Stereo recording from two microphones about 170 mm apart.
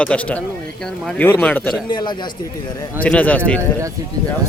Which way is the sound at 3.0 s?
10° left (ahead or behind).